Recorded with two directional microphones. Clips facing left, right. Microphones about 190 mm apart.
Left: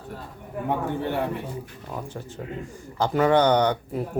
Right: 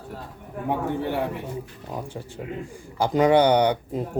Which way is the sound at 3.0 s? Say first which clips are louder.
Right 2 dB; 15° right (ahead or behind).